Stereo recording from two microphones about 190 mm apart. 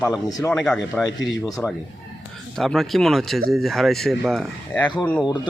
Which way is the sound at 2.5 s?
Centre (ahead or behind).